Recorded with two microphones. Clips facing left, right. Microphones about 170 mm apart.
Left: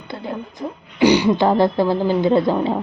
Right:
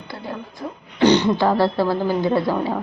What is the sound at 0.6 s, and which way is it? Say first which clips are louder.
Speech: left 3 dB; 15° left (ahead or behind).